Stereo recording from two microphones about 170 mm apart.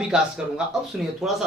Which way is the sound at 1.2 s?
Centre (ahead or behind).